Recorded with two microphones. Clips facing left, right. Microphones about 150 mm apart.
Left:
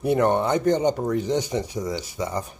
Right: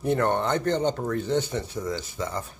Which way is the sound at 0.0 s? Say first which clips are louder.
Left 3 dB; 10° left (ahead or behind).